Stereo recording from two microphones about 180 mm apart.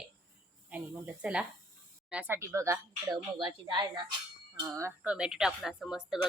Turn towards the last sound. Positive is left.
turn(degrees=-5)  # may be behind; listen again after turning